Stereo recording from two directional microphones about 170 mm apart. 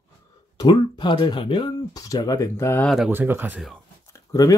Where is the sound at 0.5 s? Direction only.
25° left (ahead or behind).